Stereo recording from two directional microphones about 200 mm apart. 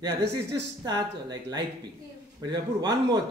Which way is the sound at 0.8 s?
20° right (ahead or behind).